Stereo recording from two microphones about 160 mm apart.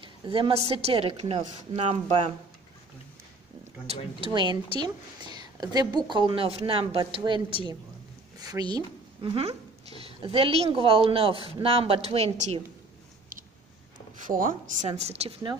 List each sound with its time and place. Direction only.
0.0 s a sound: 30° right (ahead or behind)
0.7 s a woman's voice: 40° right (ahead or behind)
3.9 s a woman's voice: 30° right (ahead or behind)
14.2 s speech: 55° right (ahead or behind); by 15.5 s 40° right (ahead or behind)